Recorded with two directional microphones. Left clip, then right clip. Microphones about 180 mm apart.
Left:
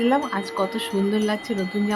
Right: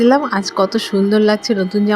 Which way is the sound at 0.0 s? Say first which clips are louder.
Right 8 dB; 40° right (ahead or behind).